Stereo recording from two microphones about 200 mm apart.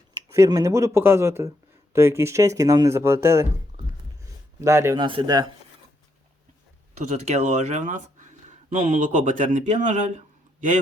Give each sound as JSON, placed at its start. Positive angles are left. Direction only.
{"t": 0.3, "sound": "speech", "side_deg": -15}
{"t": 3.7, "sound": "a sound", "side_deg": -25}
{"t": 4.6, "sound": "speech", "side_deg": -15}
{"t": 7.1, "sound": "speech", "side_deg": -35}